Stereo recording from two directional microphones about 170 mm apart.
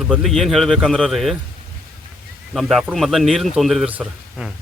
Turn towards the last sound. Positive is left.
turn(degrees=-5)  # may be behind; listen again after turning